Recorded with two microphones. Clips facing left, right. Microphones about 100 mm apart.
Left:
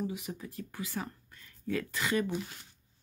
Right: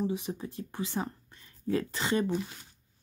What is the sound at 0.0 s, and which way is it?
Speech, 30° right (ahead or behind).